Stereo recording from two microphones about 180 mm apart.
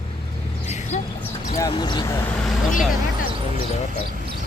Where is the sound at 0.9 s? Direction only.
40° left (ahead or behind).